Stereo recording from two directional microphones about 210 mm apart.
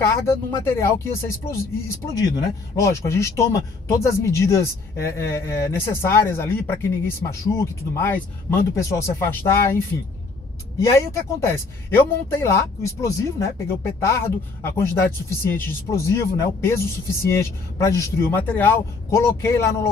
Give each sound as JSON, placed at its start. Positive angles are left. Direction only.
{"t": 0.0, "sound": "speech", "side_deg": 15}
{"t": 10.8, "sound": "speech", "side_deg": 15}